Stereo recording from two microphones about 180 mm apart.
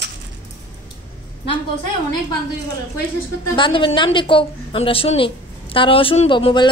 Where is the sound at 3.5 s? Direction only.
25° left (ahead or behind).